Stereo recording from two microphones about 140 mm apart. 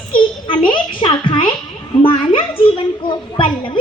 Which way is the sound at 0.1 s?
35° left (ahead or behind).